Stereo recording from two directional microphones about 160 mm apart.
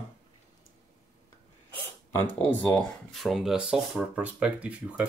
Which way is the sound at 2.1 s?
10° left (ahead or behind).